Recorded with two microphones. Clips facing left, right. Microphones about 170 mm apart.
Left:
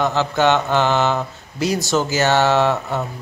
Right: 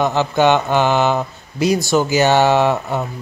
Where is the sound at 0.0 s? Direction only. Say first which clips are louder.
Right 2 dB; 15° right (ahead or behind).